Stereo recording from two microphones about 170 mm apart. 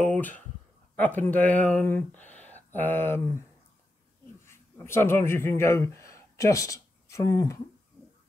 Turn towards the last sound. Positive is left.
turn(degrees=20)  # may be behind; listen again after turning